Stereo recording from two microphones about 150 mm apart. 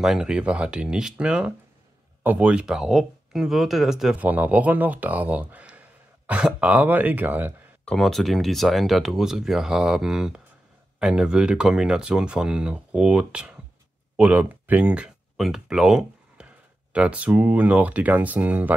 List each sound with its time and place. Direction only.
0.0 s speech: 5° right (ahead or behind)
7.8 s speech: 5° left (ahead or behind)